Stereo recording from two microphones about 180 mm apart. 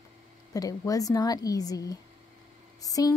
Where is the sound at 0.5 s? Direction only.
20° left (ahead or behind).